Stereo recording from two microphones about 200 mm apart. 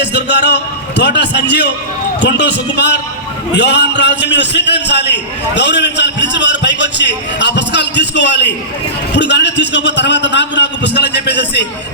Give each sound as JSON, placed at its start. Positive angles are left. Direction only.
{"t": 0.0, "sound": "a man's voice", "side_deg": 60}